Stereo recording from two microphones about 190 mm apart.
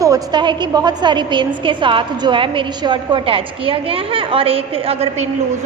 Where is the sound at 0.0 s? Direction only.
20° right (ahead or behind).